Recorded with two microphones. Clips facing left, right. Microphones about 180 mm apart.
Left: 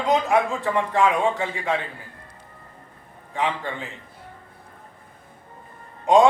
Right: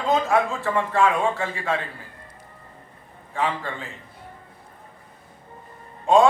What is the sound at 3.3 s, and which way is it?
Speech, 15° left (ahead or behind).